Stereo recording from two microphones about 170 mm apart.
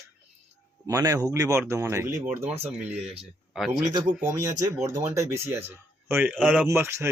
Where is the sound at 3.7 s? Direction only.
25° right (ahead or behind).